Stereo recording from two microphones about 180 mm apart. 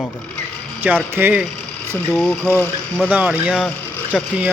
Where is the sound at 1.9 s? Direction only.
5° left (ahead or behind).